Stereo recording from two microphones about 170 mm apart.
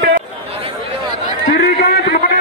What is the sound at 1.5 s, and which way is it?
Run, 65° left (ahead or behind).